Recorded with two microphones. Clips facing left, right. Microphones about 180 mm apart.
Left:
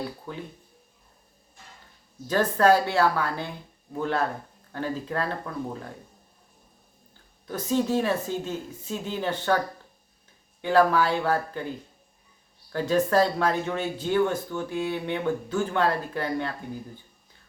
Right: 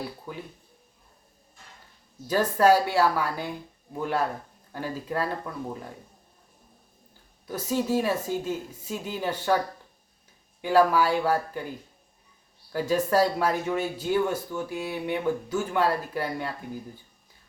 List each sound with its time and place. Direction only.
0.3 s speech: 10° right (ahead or behind)
2.2 s speech: 10° right (ahead or behind)
7.4 s speech: 10° right (ahead or behind)
10.6 s speech: 10° right (ahead or behind)
12.7 s speech: 10° right (ahead or behind)